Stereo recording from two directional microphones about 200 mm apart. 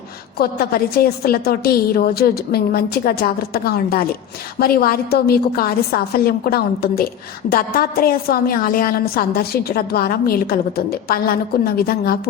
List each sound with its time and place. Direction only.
0.3 s a woman's voice: 50° left (ahead or behind)